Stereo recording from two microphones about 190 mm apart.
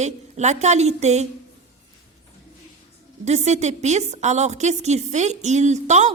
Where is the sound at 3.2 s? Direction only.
35° right (ahead or behind).